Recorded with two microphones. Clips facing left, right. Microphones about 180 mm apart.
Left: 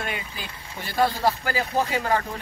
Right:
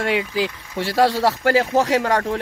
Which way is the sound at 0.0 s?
90° right.